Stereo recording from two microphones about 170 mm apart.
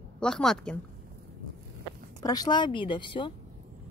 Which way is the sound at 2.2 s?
20° left (ahead or behind).